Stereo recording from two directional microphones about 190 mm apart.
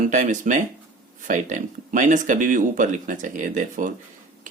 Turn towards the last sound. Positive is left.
turn(degrees=-45)  # may be behind; listen again after turning